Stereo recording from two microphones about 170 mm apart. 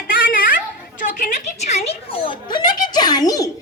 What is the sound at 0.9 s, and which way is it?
Speech, 50° left (ahead or behind).